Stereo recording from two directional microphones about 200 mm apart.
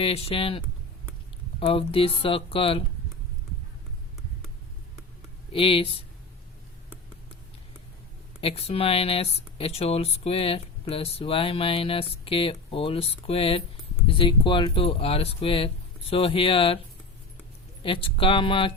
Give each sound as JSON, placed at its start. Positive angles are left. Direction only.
{"t": 0.0, "sound": "speech", "side_deg": 30}
{"t": 5.5, "sound": "speech", "side_deg": 25}
{"t": 8.4, "sound": "speech", "side_deg": 30}
{"t": 17.8, "sound": "speech", "side_deg": 25}